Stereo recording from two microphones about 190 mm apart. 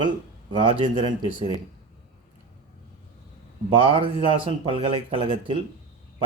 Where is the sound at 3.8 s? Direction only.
30° right (ahead or behind).